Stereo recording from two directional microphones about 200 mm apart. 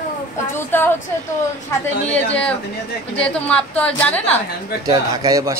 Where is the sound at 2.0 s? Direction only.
5° left (ahead or behind).